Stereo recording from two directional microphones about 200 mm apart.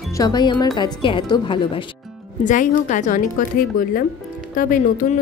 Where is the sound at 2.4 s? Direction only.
40° left (ahead or behind).